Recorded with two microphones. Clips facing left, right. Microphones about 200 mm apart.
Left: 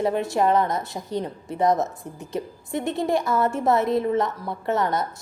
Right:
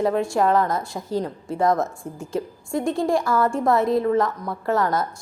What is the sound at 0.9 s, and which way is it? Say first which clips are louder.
Speech: right 2 dB; centre (ahead or behind).